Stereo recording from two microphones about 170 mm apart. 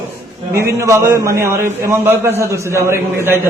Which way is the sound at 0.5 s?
15° right (ahead or behind).